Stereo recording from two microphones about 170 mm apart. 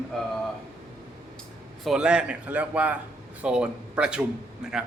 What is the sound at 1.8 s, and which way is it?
A man's voice, 5° right (ahead or behind).